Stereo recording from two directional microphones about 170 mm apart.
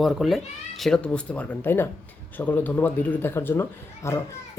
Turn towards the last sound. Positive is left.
turn(degrees=15)  # may be behind; listen again after turning